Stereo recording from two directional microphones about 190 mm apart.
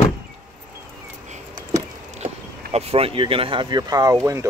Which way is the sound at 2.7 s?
30° right (ahead or behind).